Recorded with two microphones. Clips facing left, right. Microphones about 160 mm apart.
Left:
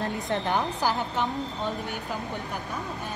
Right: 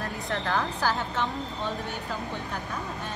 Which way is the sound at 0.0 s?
20° left (ahead or behind).